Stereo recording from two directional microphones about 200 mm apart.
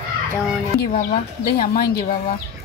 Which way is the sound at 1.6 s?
45° left (ahead or behind).